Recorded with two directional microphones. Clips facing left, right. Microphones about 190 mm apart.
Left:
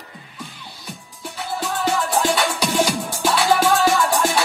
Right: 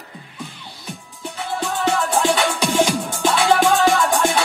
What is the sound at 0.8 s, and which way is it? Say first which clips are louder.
Music: right 3 dB; centre (ahead or behind).